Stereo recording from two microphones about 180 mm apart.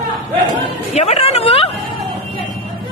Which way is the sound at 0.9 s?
35° left (ahead or behind).